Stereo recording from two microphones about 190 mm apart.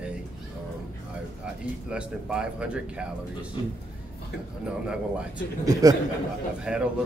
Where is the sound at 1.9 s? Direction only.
5° right (ahead or behind).